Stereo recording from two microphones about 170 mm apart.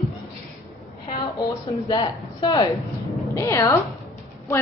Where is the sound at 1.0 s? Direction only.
20° left (ahead or behind).